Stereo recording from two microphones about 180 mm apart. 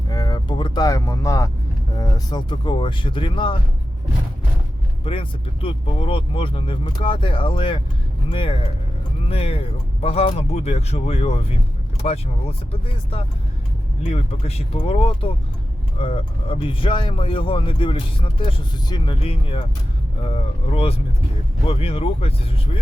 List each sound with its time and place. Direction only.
0.1 s vehicle: 20° left (ahead or behind)
2.0 s speech: 20° left (ahead or behind)
5.0 s speech: 30° left (ahead or behind)